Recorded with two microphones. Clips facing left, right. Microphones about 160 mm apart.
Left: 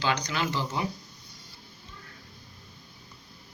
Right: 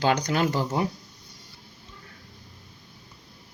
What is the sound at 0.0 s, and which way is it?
Speech, 50° right (ahead or behind).